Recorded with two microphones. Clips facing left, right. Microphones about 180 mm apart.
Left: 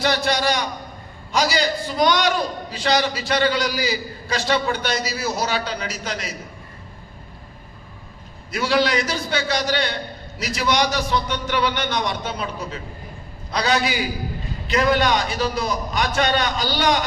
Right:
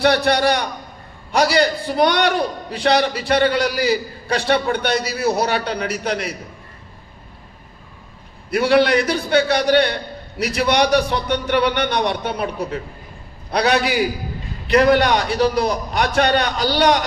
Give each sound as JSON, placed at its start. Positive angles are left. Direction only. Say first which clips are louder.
{"t": 0.3, "sound": "a man's voice", "louder": "right 4 dB", "side_deg": -60}
{"t": 8.4, "sound": "a man's voice", "louder": "right 5 dB", "side_deg": -60}